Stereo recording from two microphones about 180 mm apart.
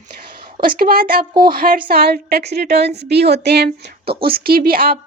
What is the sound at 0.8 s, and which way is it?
A woman's voice, 55° right (ahead or behind).